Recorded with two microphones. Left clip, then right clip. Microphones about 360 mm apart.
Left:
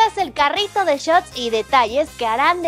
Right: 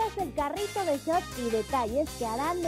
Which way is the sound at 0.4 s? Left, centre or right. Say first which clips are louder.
Left 14 dB; centre.